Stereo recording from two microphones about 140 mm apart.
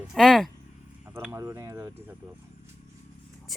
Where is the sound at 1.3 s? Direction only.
20° right (ahead or behind).